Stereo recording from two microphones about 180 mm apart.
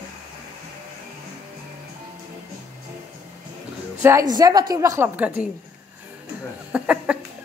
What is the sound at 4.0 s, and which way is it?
A woman's voice, 15° right (ahead or behind).